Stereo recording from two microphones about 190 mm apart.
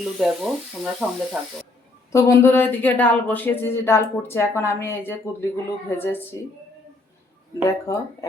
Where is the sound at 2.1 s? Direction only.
15° left (ahead or behind).